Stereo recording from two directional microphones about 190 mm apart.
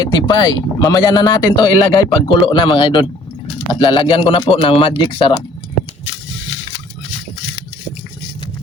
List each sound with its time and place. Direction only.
0.0 s speech: 20° left (ahead or behind)